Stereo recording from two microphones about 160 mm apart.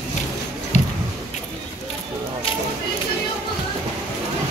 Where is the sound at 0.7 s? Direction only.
45° left (ahead or behind).